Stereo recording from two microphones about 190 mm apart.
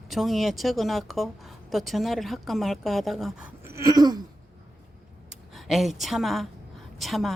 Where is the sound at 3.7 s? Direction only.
15° right (ahead or behind).